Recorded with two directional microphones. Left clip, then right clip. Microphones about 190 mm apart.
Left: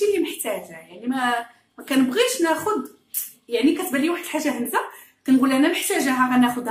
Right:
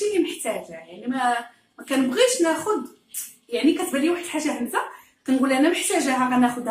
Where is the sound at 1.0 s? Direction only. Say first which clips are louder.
Even; 40° left (ahead or behind).